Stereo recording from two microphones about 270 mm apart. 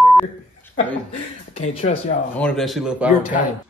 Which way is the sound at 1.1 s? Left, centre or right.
Left.